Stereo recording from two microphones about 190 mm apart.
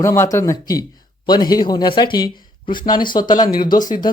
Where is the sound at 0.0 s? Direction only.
15° left (ahead or behind).